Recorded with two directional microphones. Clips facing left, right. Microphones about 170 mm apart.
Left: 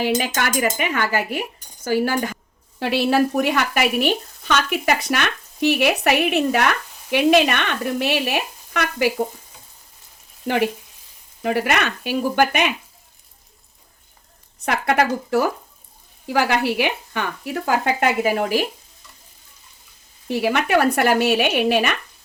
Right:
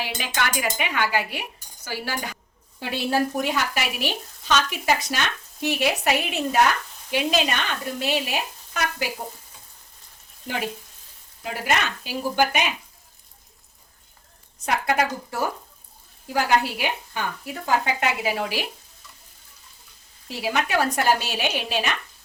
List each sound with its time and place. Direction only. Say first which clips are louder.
0.0 s speech: left 7 dB; 45° left (ahead or behind)
2.7 s speech: left 6 dB; 75° left (ahead or behind)
10.4 s frying: left 9 dB; 70° left (ahead or behind)
11.4 s speech: left 5 dB; 65° left (ahead or behind)
14.6 s speech: left 4 dB; 65° left (ahead or behind); by 18.6 s 45° left (ahead or behind)
20.2 s speech: left 6 dB; 60° left (ahead or behind)